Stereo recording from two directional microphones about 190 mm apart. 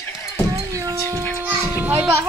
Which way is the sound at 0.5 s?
15° right (ahead or behind).